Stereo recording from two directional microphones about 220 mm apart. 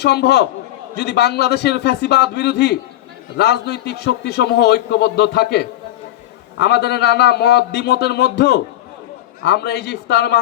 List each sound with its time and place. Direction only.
0.0 s a man's voice: 50° left (ahead or behind)